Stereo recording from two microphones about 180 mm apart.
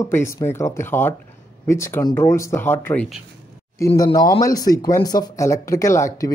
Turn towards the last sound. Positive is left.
turn(degrees=15)  # may be behind; listen again after turning